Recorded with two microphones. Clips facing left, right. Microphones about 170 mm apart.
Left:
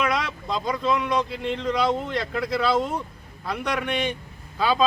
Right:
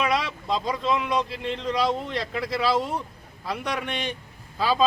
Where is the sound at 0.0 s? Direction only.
Centre (ahead or behind).